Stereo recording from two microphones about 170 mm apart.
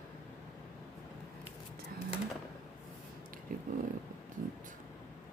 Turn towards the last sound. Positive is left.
turn(degrees=-55)  # may be behind; listen again after turning